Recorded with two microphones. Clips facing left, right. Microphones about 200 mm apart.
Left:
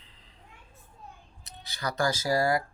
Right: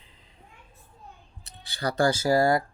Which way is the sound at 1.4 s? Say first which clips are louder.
Right 4 dB; 30° right (ahead or behind).